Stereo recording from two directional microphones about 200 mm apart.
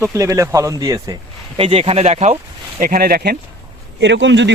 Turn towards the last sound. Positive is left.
turn(degrees=-65)  # may be behind; listen again after turning